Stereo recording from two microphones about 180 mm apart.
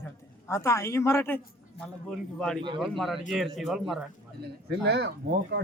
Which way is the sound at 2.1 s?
Centre (ahead or behind).